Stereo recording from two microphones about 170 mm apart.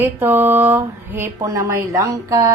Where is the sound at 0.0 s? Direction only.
10° right (ahead or behind).